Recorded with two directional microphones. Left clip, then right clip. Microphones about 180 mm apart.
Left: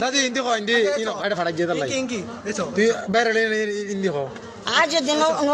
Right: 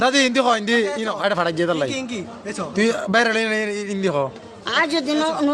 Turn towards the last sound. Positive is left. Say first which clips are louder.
# left 1 dB
turn(degrees=-10)  # may be behind; listen again after turning